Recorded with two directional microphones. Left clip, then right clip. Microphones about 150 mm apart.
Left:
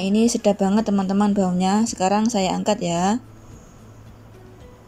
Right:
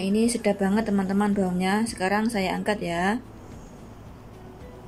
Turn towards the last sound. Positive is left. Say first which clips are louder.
# left 4 dB
turn(degrees=15)  # may be behind; listen again after turning